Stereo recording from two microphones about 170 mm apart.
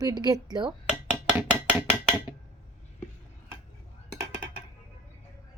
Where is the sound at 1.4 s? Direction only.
10° right (ahead or behind).